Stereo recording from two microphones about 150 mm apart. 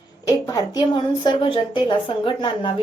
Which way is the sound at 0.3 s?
25° left (ahead or behind).